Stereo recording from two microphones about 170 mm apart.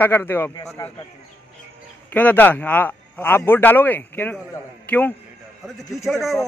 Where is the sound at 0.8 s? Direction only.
25° left (ahead or behind).